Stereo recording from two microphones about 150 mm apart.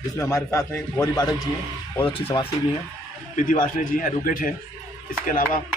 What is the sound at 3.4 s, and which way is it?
A man's voice, 65° left (ahead or behind).